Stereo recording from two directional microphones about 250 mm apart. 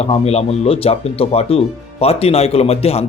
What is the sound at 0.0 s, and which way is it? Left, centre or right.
Speech, left.